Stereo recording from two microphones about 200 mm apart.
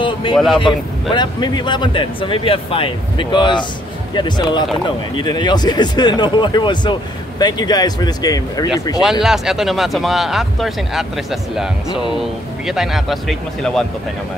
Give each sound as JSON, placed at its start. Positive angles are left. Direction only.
{"t": 0.0, "sound": "speech", "side_deg": 25}
{"t": 0.7, "sound": "speech", "side_deg": 0}
{"t": 1.1, "sound": "speech", "side_deg": 20}
{"t": 9.2, "sound": "speech", "side_deg": 0}
{"t": 12.2, "sound": "speech", "side_deg": 0}